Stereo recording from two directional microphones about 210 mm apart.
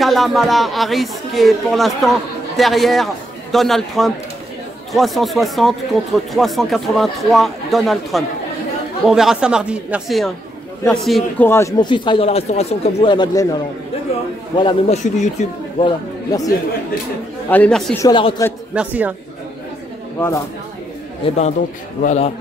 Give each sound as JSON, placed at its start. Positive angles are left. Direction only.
{"t": 0.0, "sound": "speech", "side_deg": 0}
{"t": 11.4, "sound": "speech", "side_deg": 10}
{"t": 14.6, "sound": "speech", "side_deg": 25}
{"t": 16.3, "sound": "speech", "side_deg": 15}
{"t": 17.5, "sound": "speech", "side_deg": 5}
{"t": 18.0, "sound": "speech", "side_deg": 20}
{"t": 18.8, "sound": "speech", "side_deg": -5}
{"t": 20.2, "sound": "speech", "side_deg": 15}
{"t": 22.0, "sound": "a man's voice", "side_deg": 35}